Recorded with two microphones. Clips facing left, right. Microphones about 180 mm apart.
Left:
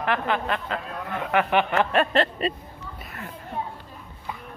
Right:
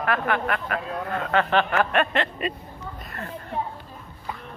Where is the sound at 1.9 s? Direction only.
35° left (ahead or behind).